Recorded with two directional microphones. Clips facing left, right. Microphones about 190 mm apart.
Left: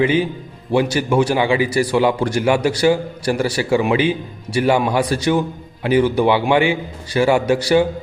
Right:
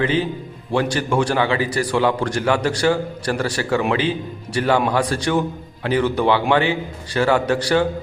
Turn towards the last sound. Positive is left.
turn(degrees=10)  # may be behind; listen again after turning